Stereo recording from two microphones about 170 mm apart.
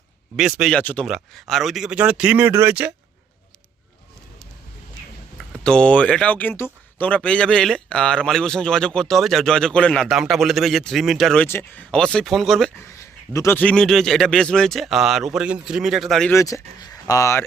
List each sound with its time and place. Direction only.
0.3 s speech: 5° right (ahead or behind)
0.8 s speech: 10° left (ahead or behind); by 2.9 s 10° right (ahead or behind)
5.4 s speech: 5° left (ahead or behind)
13.0 s speech: 15° left (ahead or behind)
16.3 s speech: 20° left (ahead or behind)